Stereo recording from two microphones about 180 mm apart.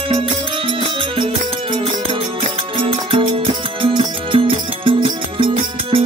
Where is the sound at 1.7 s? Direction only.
30° right (ahead or behind).